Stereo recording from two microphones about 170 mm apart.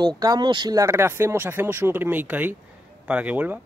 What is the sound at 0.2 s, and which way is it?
Speech, 25° right (ahead or behind).